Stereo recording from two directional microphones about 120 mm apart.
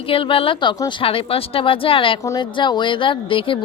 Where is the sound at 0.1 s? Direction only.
50° left (ahead or behind).